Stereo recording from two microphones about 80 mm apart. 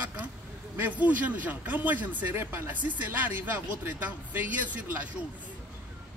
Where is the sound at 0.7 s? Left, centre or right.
Right.